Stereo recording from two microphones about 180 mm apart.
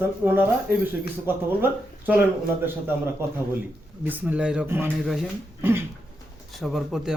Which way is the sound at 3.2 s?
15° right (ahead or behind).